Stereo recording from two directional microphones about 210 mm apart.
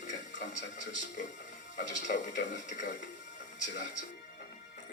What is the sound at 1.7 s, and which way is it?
Speech, 35° left (ahead or behind).